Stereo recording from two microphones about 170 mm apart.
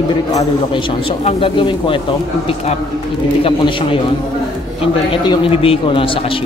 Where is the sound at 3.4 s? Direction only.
35° left (ahead or behind).